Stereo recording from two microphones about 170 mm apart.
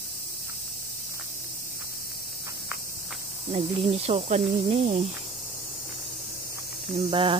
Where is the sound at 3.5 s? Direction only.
35° right (ahead or behind).